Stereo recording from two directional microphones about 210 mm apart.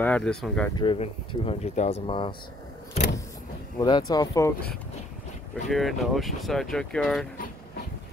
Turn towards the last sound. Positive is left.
turn(degrees=40)  # may be behind; listen again after turning